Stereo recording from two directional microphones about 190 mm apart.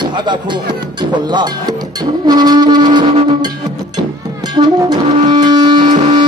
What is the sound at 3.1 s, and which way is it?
Music, 35° right (ahead or behind).